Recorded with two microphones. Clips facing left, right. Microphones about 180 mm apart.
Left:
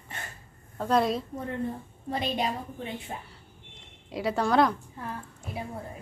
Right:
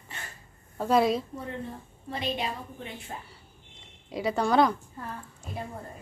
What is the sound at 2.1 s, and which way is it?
Speech, 40° left (ahead or behind).